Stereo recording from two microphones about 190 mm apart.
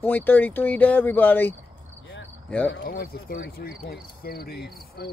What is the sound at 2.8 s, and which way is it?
Cricket, 50° left (ahead or behind).